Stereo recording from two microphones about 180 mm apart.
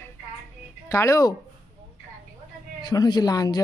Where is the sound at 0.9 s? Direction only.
15° left (ahead or behind).